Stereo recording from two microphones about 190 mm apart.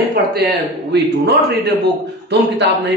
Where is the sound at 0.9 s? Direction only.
60° right (ahead or behind).